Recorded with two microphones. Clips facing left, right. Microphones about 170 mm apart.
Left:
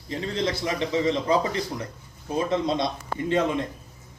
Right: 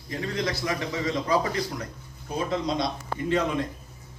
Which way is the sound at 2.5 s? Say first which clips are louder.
Left 1 dB; 25° left (ahead or behind).